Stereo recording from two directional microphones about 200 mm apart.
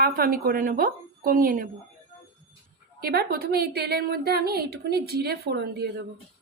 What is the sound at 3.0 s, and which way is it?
A woman's voice, 50° right (ahead or behind).